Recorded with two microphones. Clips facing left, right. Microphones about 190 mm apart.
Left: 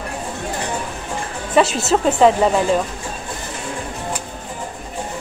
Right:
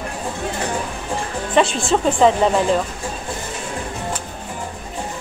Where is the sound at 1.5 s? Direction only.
5° left (ahead or behind).